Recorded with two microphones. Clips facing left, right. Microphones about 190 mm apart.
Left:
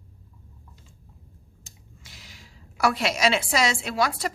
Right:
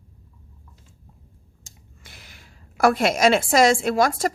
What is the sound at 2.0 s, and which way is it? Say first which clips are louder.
A woman's voice: right 2 dB; 55° right (ahead or behind).